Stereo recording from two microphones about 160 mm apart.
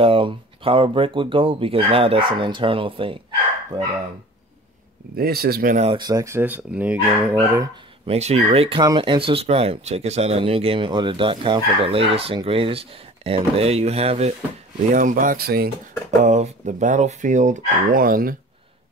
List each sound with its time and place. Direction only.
0.0 s speech: 35° right (ahead or behind)
5.1 s speech: 75° right (ahead or behind)
5.9 s speech: 25° right (ahead or behind)
8.1 s speech: 45° right (ahead or behind)
14.9 s speech: 55° right (ahead or behind); by 15.7 s 75° right (ahead or behind)
16.2 s speech: 45° right (ahead or behind); by 18.3 s 60° right (ahead or behind)